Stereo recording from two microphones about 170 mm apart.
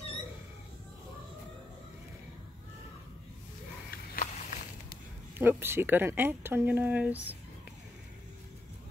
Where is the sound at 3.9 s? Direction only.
60° left (ahead or behind).